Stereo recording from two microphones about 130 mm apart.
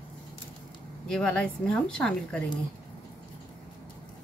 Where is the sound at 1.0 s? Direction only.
5° left (ahead or behind).